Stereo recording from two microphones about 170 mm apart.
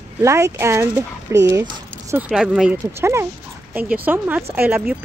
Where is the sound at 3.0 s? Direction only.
15° right (ahead or behind).